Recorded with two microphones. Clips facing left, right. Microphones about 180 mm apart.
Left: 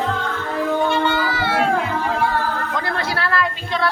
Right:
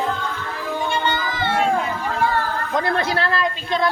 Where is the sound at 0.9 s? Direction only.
5° left (ahead or behind).